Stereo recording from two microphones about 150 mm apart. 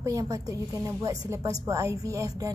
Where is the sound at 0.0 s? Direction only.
20° right (ahead or behind).